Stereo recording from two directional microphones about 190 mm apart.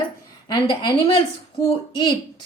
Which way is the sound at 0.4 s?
20° left (ahead or behind).